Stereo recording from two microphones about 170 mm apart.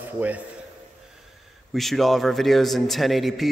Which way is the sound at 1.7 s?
Centre (ahead or behind).